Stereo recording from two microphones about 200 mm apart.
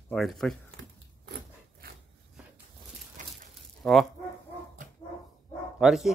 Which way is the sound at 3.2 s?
40° right (ahead or behind).